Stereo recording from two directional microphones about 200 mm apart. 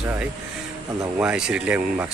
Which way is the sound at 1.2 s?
5° right (ahead or behind).